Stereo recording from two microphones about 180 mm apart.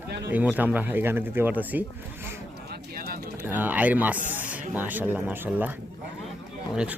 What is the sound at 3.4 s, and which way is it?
Speech, 10° right (ahead or behind).